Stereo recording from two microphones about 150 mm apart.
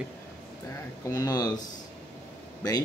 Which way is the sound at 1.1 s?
25° left (ahead or behind).